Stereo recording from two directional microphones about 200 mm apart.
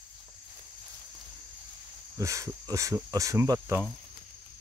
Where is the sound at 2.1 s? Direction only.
15° right (ahead or behind).